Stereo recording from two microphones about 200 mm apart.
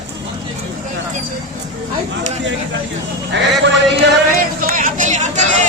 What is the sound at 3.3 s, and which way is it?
Music, 60° right (ahead or behind).